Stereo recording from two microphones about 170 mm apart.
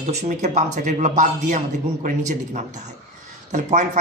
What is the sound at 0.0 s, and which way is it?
A man's voice, 40° right (ahead or behind).